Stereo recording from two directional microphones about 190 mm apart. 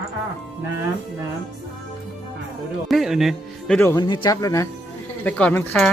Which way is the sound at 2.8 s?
Centre (ahead or behind).